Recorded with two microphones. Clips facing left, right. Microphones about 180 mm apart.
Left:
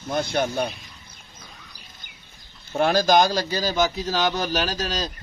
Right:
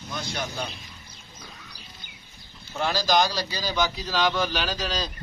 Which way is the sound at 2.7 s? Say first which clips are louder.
Left 5 dB; 55° left (ahead or behind).